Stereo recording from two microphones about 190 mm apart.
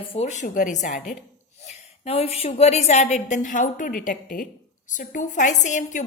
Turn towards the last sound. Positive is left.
turn(degrees=40)  # may be behind; listen again after turning